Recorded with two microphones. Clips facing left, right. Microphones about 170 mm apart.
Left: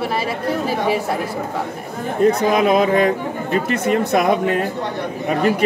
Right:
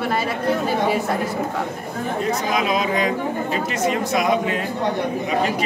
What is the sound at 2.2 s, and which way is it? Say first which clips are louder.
Speech: left 9 dB; 55° left (ahead or behind).